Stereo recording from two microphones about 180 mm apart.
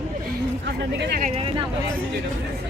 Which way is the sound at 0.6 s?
70° right (ahead or behind).